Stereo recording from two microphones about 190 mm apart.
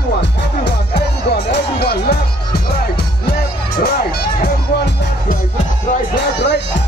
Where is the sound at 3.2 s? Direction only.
55° left (ahead or behind).